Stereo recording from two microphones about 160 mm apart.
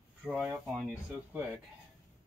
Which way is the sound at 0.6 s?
5° right (ahead or behind).